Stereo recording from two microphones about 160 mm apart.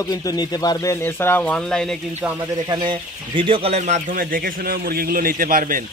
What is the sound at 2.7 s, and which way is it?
Speech, 30° right (ahead or behind).